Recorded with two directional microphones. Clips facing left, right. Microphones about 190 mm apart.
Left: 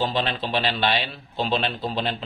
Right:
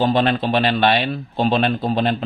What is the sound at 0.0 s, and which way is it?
A man's voice, 55° right (ahead or behind).